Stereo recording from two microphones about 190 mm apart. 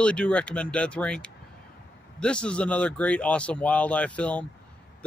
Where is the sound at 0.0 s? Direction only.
5° left (ahead or behind).